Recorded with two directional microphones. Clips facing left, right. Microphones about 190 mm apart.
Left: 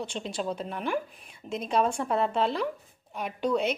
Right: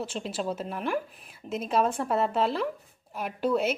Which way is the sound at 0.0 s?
5° right (ahead or behind).